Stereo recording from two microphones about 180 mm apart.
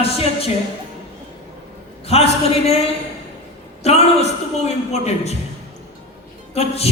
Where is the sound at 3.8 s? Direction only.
35° left (ahead or behind).